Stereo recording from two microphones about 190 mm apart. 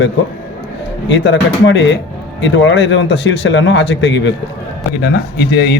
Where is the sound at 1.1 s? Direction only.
70° left (ahead or behind).